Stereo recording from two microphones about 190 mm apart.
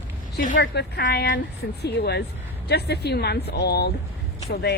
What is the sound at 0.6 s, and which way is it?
A woman's voice, 65° left (ahead or behind).